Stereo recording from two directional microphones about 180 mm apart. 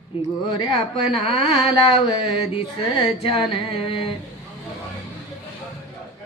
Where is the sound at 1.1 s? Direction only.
Centre (ahead or behind).